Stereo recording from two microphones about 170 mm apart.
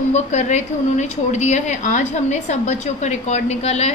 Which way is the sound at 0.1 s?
45° left (ahead or behind).